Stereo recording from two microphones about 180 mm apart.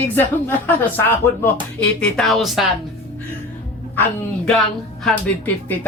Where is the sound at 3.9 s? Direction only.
5° left (ahead or behind).